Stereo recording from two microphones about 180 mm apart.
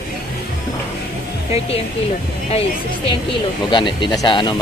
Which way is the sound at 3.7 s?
25° left (ahead or behind).